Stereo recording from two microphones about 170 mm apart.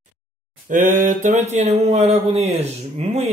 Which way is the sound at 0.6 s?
45° right (ahead or behind).